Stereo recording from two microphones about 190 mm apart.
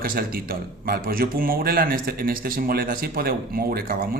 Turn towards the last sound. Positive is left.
turn(degrees=-50)  # may be behind; listen again after turning